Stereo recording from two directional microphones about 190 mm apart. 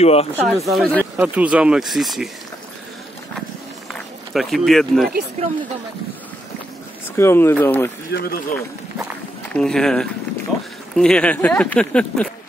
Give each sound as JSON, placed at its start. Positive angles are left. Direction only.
{"t": 0.0, "sound": "speech", "side_deg": 30}
{"t": 0.4, "sound": "speech", "side_deg": 0}
{"t": 1.1, "sound": "speech", "side_deg": -10}
{"t": 4.3, "sound": "speech", "side_deg": 0}
{"t": 7.2, "sound": "speech", "side_deg": 15}
{"t": 8.1, "sound": "a man's voice", "side_deg": 50}
{"t": 9.5, "sound": "speech", "side_deg": 5}